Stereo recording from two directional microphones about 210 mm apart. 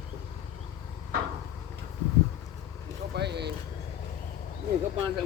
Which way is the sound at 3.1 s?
55° right (ahead or behind).